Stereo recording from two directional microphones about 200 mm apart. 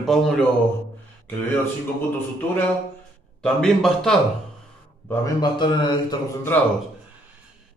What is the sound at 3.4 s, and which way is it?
Speech, centre (ahead or behind).